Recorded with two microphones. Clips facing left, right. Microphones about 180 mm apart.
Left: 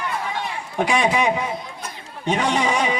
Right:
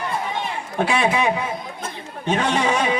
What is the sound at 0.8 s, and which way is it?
A man's voice, 15° left (ahead or behind).